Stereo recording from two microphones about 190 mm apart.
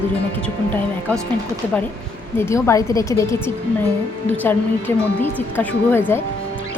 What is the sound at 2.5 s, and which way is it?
Speech, 15° left (ahead or behind).